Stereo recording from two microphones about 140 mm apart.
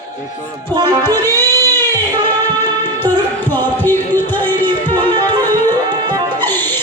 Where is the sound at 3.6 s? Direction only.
15° left (ahead or behind).